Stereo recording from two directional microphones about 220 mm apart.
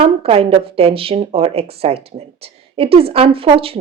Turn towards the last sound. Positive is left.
turn(degrees=-25)  # may be behind; listen again after turning